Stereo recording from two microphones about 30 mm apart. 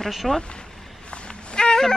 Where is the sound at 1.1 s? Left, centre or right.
Left.